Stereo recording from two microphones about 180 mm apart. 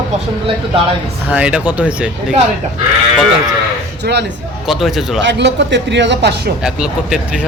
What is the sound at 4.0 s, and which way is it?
Speech, 70° right (ahead or behind).